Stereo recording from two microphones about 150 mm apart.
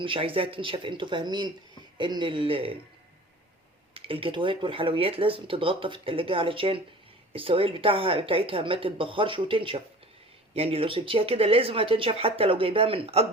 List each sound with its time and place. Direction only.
0.0 s speech: 35° right (ahead or behind)
3.9 s speech: 35° right (ahead or behind)